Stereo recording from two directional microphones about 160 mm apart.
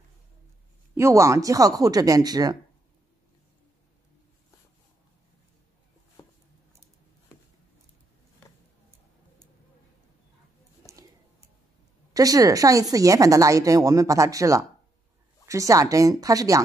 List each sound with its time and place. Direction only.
0.9 s speech: 20° right (ahead or behind)
6.2 s a sound: 15° left (ahead or behind)
12.1 s speech: 20° right (ahead or behind)